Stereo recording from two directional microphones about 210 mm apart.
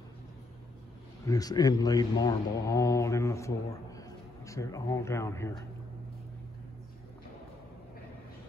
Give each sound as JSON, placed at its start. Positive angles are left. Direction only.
{"t": 1.2, "sound": "a man's voice", "side_deg": 15}